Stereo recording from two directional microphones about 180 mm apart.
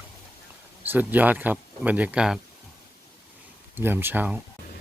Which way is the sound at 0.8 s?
10° right (ahead or behind).